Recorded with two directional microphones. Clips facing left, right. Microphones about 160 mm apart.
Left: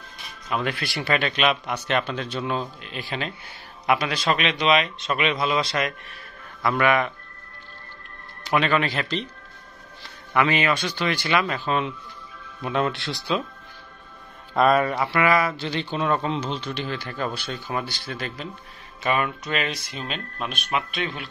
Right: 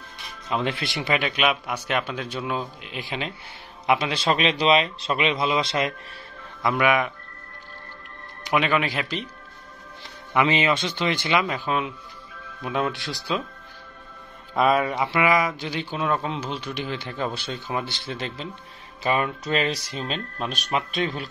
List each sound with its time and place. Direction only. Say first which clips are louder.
0.5 s a man's voice: right 1 dB; 25° right (ahead or behind)
6.6 s speech: even; 15° right (ahead or behind)
8.5 s speech: left 1 dB; 10° right (ahead or behind)
10.3 s a man's voice: even; 20° right (ahead or behind); by 13.4 s centre (ahead or behind)
14.5 s speech: left 2 dB; 5° right (ahead or behind)
15.0 s speech: even; 15° right (ahead or behind); by 21.3 s 40° right (ahead or behind)